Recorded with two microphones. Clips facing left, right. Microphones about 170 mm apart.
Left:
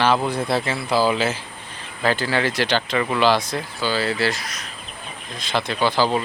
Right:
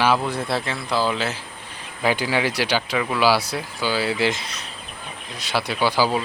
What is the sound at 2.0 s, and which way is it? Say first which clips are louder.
Speech: even; 10° right (ahead or behind).